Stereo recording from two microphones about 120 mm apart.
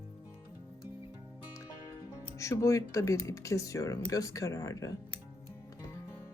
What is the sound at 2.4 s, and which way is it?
Speech, 25° left (ahead or behind).